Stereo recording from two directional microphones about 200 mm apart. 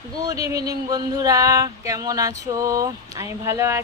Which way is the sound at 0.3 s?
15° right (ahead or behind).